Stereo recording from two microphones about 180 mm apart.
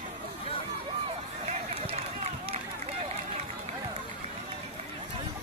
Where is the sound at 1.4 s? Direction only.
35° right (ahead or behind).